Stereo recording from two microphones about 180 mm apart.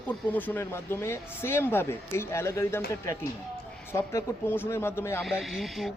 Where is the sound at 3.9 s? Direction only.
15° left (ahead or behind).